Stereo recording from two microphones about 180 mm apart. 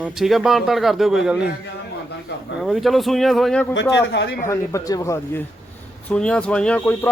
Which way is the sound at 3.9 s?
75° left (ahead or behind).